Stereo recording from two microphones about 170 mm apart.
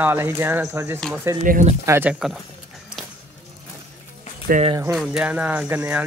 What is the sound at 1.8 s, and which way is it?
Speech, 15° right (ahead or behind).